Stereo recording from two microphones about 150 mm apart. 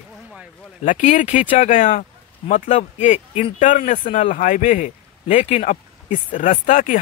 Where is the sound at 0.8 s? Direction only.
55° left (ahead or behind).